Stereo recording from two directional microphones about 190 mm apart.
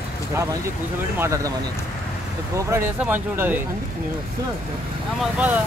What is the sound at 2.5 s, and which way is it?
Speech, 10° right (ahead or behind).